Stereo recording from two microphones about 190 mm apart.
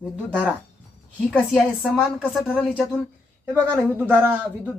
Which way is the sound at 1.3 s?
Centre (ahead or behind).